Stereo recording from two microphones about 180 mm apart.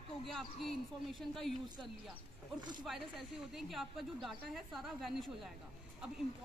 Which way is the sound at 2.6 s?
25° right (ahead or behind).